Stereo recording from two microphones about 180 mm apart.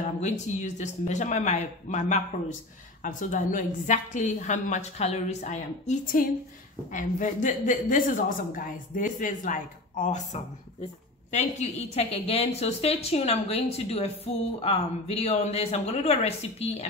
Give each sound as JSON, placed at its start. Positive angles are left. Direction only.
{"t": 0.0, "sound": "a woman's voice", "side_deg": 40}